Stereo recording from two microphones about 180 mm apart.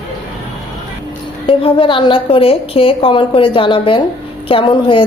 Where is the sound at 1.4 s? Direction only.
30° left (ahead or behind).